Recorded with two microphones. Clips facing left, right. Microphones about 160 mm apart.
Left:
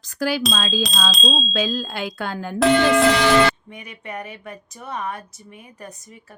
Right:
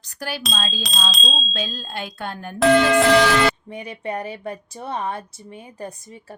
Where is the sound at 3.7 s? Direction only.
30° right (ahead or behind).